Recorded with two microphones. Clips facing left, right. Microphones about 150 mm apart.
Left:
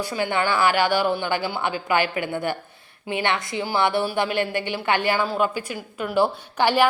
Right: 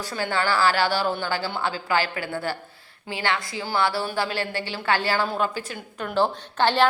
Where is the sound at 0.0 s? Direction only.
15° left (ahead or behind).